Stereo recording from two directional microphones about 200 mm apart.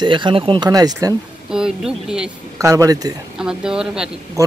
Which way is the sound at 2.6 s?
15° right (ahead or behind).